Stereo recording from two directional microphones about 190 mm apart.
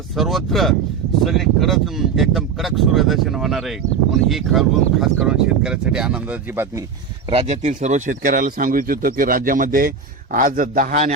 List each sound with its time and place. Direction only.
0.2 s speech: centre (ahead or behind)
7.3 s speech: 35° right (ahead or behind)